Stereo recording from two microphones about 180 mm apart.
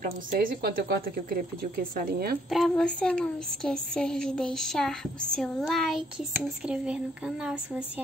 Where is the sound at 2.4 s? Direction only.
Centre (ahead or behind).